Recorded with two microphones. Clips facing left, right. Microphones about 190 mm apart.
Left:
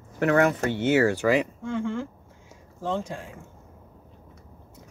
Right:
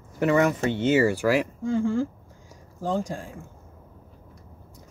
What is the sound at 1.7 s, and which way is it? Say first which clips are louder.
Speech: right 5 dB; 35° right (ahead or behind).